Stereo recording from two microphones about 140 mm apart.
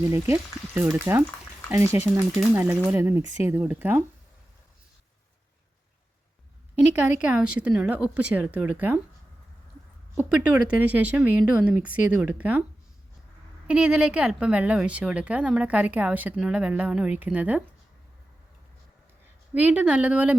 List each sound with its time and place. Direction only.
0.0 s a woman's voice: 20° right (ahead or behind)
7.2 s a woman's voice: 10° right (ahead or behind)
10.2 s a woman's voice: 10° right (ahead or behind)
13.7 s a woman's voice: 5° right (ahead or behind)
19.5 s a woman's voice: 10° right (ahead or behind)